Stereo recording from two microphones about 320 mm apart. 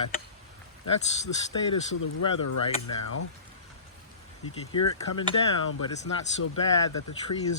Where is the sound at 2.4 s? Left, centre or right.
Left.